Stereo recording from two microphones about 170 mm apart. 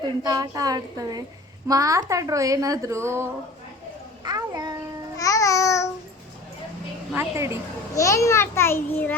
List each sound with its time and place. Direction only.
0.2 s a woman's voice: 20° right (ahead or behind)
4.2 s a sound: 20° right (ahead or behind)
5.1 s babbling: 20° left (ahead or behind)
7.1 s a woman's voice: 15° right (ahead or behind)
7.9 s a child's voice: 20° left (ahead or behind)